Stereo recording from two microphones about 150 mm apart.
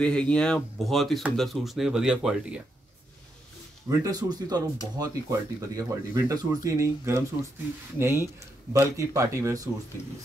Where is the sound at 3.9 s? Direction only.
25° right (ahead or behind).